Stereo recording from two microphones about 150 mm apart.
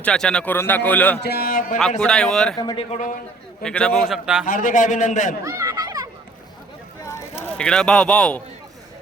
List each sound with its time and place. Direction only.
0.0 s a man's voice: 5° left (ahead or behind)
1.2 s speech: 90° left; by 1.8 s 70° left (ahead or behind)
2.0 s a man's voice: 5° left (ahead or behind)
2.6 s speech: 25° left (ahead or behind)
3.6 s a man's voice: 5° left (ahead or behind)
4.4 s a man's voice: 60° left (ahead or behind)
5.5 s chatter: 20° right (ahead or behind)
7.6 s a man's voice: 5° left (ahead or behind)